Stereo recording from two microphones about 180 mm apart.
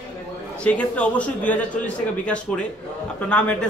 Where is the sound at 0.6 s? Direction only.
5° left (ahead or behind).